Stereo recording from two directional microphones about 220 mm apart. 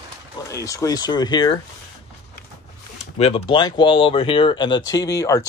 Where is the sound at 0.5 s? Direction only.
15° left (ahead or behind).